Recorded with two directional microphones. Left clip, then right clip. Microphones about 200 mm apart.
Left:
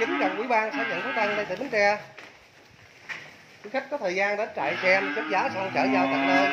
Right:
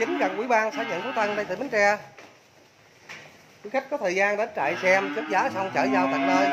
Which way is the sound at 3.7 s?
20° right (ahead or behind).